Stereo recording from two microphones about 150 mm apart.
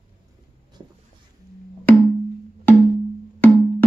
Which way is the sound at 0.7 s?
30° right (ahead or behind).